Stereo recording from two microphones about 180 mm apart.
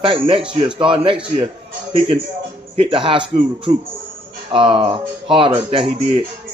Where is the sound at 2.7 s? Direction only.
30° right (ahead or behind).